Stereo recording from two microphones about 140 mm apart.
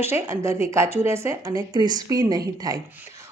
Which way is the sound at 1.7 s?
30° right (ahead or behind).